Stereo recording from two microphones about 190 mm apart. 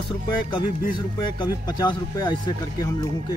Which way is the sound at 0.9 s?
25° left (ahead or behind).